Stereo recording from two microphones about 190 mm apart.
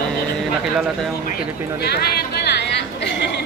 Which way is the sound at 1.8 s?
55° left (ahead or behind).